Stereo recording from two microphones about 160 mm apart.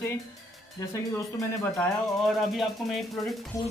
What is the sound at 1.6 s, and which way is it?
Speech, 5° left (ahead or behind).